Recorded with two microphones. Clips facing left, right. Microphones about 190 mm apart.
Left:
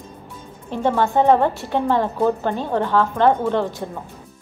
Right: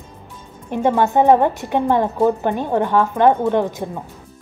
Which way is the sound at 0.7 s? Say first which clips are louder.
Right 2 dB; 15° right (ahead or behind).